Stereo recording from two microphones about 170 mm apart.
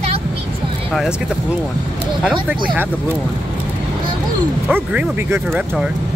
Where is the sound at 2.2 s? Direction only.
5° right (ahead or behind).